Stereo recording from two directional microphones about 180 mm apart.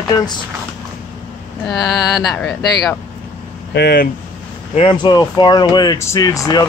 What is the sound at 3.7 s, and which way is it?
Speech, 60° left (ahead or behind).